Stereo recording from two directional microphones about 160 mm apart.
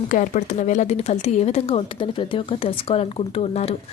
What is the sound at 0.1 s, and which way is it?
A woman's voice, 50° left (ahead or behind).